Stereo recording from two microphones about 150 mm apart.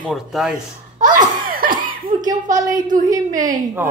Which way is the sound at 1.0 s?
60° right (ahead or behind).